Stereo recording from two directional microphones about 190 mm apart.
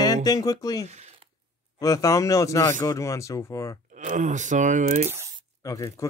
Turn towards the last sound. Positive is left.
turn(degrees=20)  # may be behind; listen again after turning